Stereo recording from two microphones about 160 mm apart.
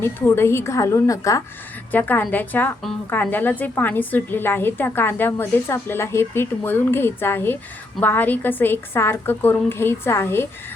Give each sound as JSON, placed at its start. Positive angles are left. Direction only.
{"t": 0.0, "sound": "a woman's voice", "side_deg": 15}